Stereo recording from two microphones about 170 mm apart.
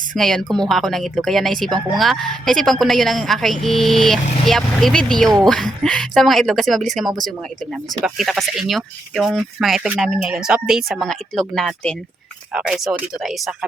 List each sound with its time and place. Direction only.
0.2 s speech: centre (ahead or behind)